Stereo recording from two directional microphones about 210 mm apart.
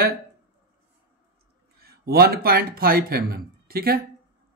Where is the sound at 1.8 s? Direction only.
45° right (ahead or behind).